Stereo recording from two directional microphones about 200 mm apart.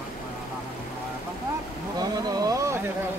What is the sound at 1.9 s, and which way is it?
Speech, 20° right (ahead or behind).